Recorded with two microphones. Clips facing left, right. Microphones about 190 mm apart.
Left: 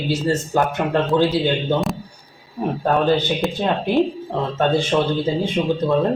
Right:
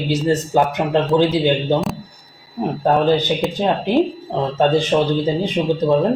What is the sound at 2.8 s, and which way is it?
Speech, 15° right (ahead or behind).